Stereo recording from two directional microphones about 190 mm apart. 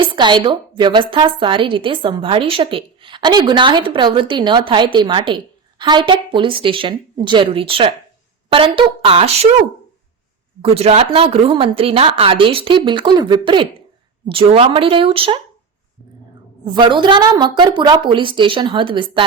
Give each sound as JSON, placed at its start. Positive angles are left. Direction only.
{"t": 0.2, "sound": "a woman's voice", "side_deg": -25}
{"t": 10.6, "sound": "a woman's voice", "side_deg": -35}
{"t": 16.6, "sound": "a woman's voice", "side_deg": -25}